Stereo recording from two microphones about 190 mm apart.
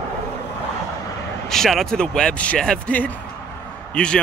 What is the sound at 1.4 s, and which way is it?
Speech, centre (ahead or behind).